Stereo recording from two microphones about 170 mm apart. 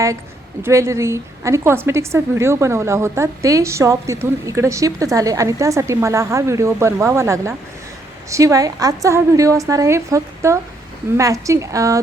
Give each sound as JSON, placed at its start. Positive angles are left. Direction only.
{"t": 0.6, "sound": "a woman's voice", "side_deg": -15}